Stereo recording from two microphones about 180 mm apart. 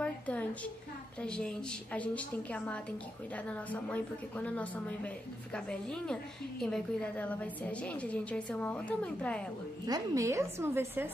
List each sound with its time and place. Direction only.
0.0 s a sound: 5° left (ahead or behind)
1.2 s a woman's voice: 5° left (ahead or behind)
9.8 s a woman's voice: 20° right (ahead or behind)